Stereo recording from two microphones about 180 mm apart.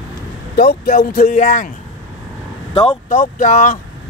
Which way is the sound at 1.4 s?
40° left (ahead or behind).